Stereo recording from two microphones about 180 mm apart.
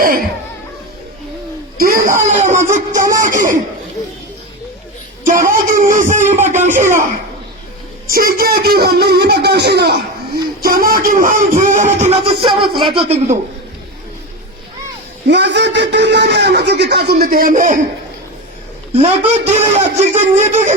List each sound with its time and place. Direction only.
0.0 s music: 55° right (ahead or behind)
1.8 s music: 50° right (ahead or behind)
5.2 s music: 50° right (ahead or behind)
8.0 s speech: 55° right (ahead or behind)
10.6 s music: 55° right (ahead or behind); by 12.5 s 30° right (ahead or behind)
12.6 s speech: 25° right (ahead or behind)
15.3 s a man's voice: 75° right (ahead or behind); by 17.7 s 45° right (ahead or behind)
18.9 s speech: 40° right (ahead or behind)